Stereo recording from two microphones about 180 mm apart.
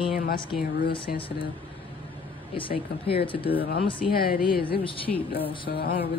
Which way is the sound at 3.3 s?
30° left (ahead or behind).